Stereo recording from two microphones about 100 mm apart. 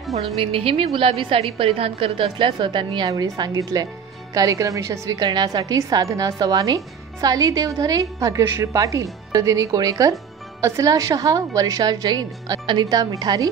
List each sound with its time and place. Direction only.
0.4 s a woman's voice: 65° right (ahead or behind)
3.1 s a woman's voice: 45° right (ahead or behind)